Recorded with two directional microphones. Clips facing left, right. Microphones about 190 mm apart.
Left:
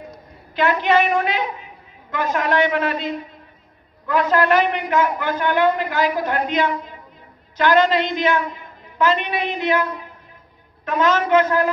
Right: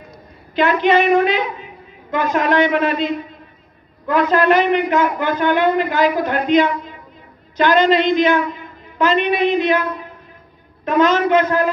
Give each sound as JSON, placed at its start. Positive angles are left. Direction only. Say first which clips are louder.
{"t": 0.6, "sound": "speech", "louder": "right 3 dB", "side_deg": -20}
{"t": 4.1, "sound": "speech", "louder": "right 3 dB", "side_deg": -20}
{"t": 10.9, "sound": "speech", "louder": "right 3 dB", "side_deg": -20}